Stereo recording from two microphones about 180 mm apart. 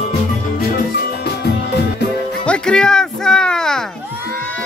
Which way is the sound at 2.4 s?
5° left (ahead or behind).